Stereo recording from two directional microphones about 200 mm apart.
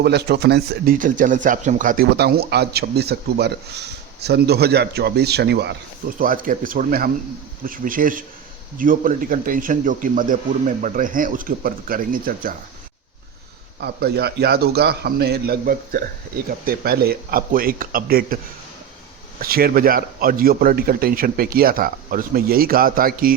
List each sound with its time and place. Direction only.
0.0 s speech: 55° right (ahead or behind)
6.1 s speech: 45° right (ahead or behind)
13.8 s speech: 55° right (ahead or behind)
19.4 s speech: 50° right (ahead or behind)